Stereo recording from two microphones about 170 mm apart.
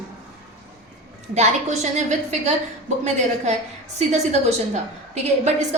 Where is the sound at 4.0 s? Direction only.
40° right (ahead or behind).